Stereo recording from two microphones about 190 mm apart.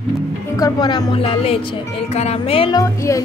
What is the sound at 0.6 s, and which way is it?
Speech, 20° left (ahead or behind).